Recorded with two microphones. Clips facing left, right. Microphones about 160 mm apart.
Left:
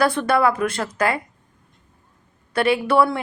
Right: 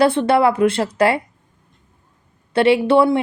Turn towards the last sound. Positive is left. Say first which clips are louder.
# right 4 dB
turn(degrees=-25)  # may be behind; listen again after turning